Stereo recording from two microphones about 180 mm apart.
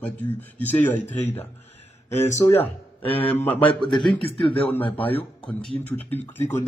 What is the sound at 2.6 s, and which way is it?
Speech, 30° left (ahead or behind).